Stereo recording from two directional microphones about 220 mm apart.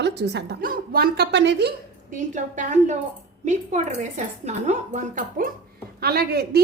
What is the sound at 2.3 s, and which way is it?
A woman's voice, 35° right (ahead or behind).